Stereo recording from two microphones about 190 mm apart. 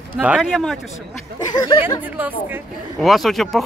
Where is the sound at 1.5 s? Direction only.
20° left (ahead or behind).